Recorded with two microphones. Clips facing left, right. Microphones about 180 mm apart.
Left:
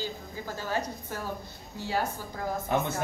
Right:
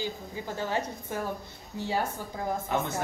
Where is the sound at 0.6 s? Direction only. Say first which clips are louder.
Right 1 dB; 25° right (ahead or behind).